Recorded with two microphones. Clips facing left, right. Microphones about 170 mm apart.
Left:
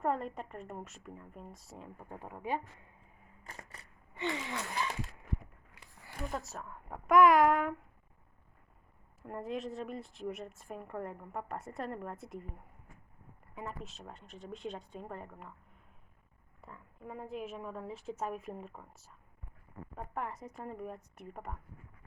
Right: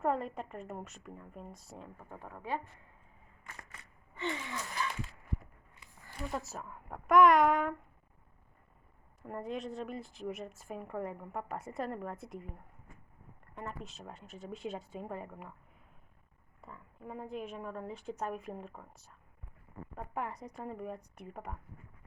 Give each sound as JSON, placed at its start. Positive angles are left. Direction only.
{"t": 0.0, "sound": "a woman's voice", "side_deg": 0}
{"t": 2.0, "sound": "speech", "side_deg": 15}
{"t": 4.2, "sound": "gasp", "side_deg": 20}
{"t": 6.3, "sound": "a woman's voice", "side_deg": 0}
{"t": 9.2, "sound": "a woman's voice", "side_deg": 0}
{"t": 13.8, "sound": "a woman's voice", "side_deg": 0}
{"t": 16.6, "sound": "a woman's voice", "side_deg": 0}